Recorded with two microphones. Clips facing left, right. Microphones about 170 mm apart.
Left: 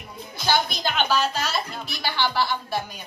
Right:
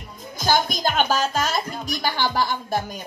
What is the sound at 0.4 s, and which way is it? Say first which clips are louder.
Speech: right 3 dB; 45° right (ahead or behind).